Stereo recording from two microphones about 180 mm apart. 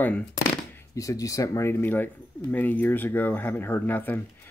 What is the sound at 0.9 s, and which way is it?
Speech, 20° left (ahead or behind).